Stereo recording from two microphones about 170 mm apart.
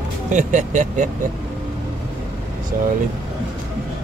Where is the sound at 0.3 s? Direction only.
45° right (ahead or behind).